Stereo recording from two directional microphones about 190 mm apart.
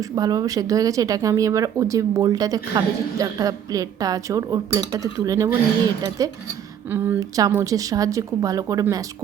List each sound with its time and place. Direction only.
0.0 s speech: 20° right (ahead or behind)